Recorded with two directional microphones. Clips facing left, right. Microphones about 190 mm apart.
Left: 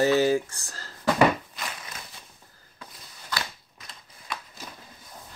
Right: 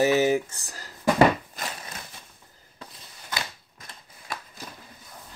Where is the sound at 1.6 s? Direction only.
45° right (ahead or behind).